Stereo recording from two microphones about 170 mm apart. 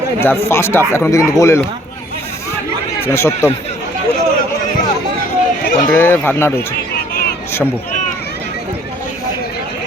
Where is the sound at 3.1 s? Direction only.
15° left (ahead or behind).